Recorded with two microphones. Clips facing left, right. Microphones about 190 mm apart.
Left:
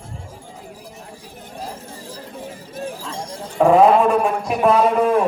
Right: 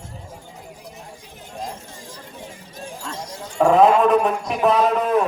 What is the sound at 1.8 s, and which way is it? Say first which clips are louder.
Chatter: left 5 dB; 35° left (ahead or behind).